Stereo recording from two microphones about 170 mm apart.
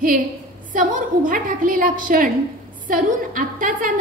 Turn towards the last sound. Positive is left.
turn(degrees=-50)  # may be behind; listen again after turning